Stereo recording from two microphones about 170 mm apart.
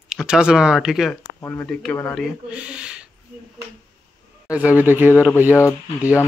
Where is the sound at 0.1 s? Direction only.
5° right (ahead or behind).